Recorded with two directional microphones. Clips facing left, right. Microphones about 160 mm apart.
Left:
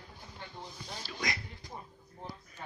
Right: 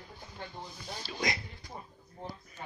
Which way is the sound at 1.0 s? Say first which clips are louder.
Right 4 dB; 25° right (ahead or behind).